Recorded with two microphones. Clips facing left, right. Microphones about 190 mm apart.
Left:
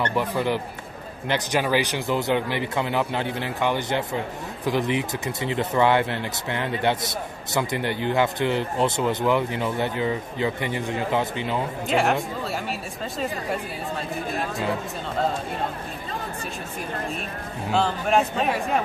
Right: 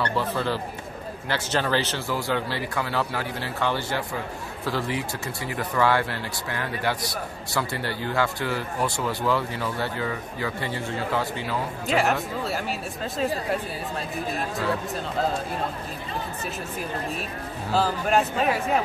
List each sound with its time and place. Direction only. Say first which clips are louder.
0.0 s speech: left 2 dB; 15° left (ahead or behind)
11.9 s speech: left 1 dB; centre (ahead or behind)
17.7 s speech: left 1 dB; centre (ahead or behind)